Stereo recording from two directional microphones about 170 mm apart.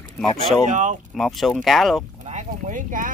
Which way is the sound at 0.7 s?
45° right (ahead or behind).